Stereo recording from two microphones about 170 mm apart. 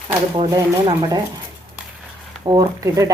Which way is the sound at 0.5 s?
25° right (ahead or behind).